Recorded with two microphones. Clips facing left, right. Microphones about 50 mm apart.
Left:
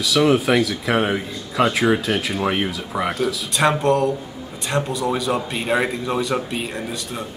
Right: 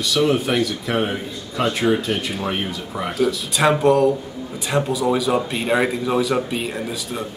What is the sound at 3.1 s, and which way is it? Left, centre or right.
A man's voice, centre.